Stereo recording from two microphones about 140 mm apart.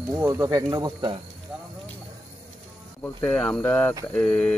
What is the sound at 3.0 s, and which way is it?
Speech, 5° left (ahead or behind).